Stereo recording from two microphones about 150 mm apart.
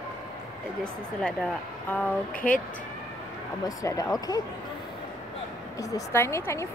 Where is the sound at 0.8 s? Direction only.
5° left (ahead or behind).